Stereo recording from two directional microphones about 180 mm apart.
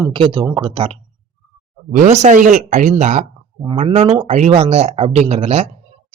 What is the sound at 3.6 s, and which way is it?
Speech, 30° right (ahead or behind).